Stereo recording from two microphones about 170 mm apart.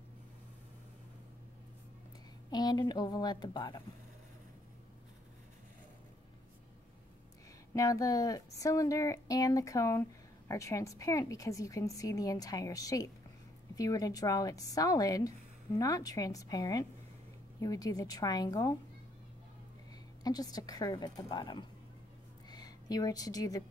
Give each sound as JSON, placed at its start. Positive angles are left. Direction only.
{"t": 2.5, "sound": "a woman's voice", "side_deg": 25}
{"t": 7.7, "sound": "a woman's voice", "side_deg": 20}
{"t": 20.2, "sound": "a woman's voice", "side_deg": 20}